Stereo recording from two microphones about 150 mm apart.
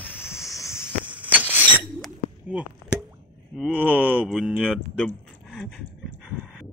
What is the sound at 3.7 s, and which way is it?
Speech, 10° right (ahead or behind).